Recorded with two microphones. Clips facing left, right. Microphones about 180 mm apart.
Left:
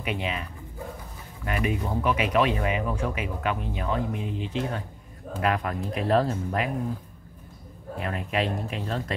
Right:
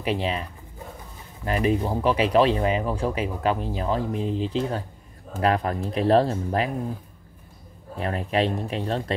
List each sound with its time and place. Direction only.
0.0 s speech: 35° right (ahead or behind)
8.0 s speech: 35° right (ahead or behind)